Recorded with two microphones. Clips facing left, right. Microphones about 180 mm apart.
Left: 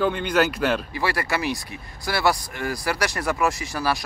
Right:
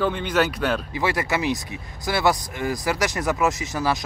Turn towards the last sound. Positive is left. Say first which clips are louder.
# right 1 dB
turn(degrees=-20)  # may be behind; listen again after turning